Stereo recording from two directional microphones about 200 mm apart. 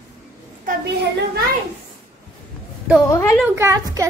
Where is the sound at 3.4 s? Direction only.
10° right (ahead or behind).